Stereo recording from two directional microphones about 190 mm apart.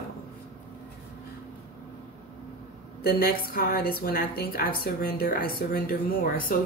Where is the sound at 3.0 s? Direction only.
50° left (ahead or behind).